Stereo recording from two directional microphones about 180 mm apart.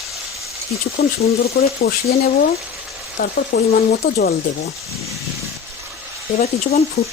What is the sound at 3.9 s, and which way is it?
Speech, 60° left (ahead or behind).